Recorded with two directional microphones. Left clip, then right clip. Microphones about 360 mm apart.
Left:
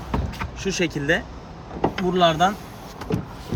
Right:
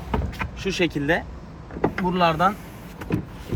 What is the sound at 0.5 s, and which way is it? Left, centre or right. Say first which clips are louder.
Speech: right 1 dB; centre.